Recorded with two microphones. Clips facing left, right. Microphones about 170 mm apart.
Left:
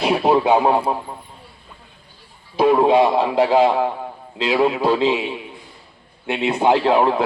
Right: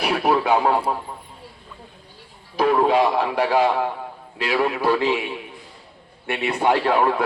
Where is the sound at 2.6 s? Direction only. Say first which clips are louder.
Left 4 dB; 20° left (ahead or behind).